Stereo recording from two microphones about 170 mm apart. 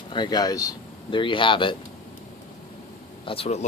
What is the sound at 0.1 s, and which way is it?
Speech, 25° left (ahead or behind).